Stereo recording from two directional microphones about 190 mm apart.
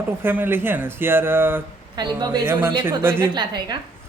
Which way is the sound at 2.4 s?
10° right (ahead or behind).